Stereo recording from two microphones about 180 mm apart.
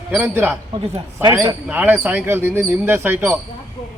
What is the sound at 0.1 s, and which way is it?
Speech, 10° right (ahead or behind).